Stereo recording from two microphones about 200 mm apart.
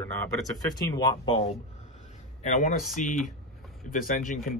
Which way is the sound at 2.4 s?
35° left (ahead or behind).